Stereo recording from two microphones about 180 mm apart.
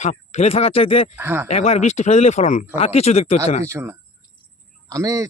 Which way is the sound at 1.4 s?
35° left (ahead or behind).